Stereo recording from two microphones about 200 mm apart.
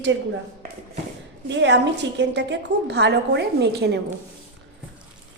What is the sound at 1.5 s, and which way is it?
A woman's voice, 60° right (ahead or behind).